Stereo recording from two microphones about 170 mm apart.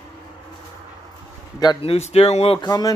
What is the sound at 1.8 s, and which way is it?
Speech, 35° left (ahead or behind).